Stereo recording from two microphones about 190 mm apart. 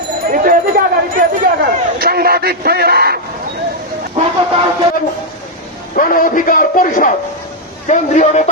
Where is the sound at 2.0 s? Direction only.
55° right (ahead or behind).